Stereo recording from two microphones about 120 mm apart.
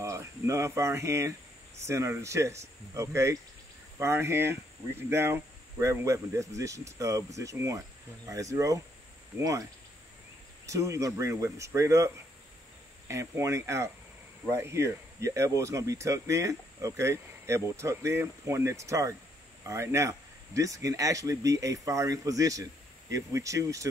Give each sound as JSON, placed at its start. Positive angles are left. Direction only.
{"t": 0.0, "sound": "speech", "side_deg": -25}
{"t": 10.7, "sound": "speech", "side_deg": -25}
{"t": 13.1, "sound": "speech", "side_deg": -25}